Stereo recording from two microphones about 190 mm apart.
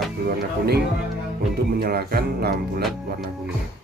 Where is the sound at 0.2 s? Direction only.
55° right (ahead or behind).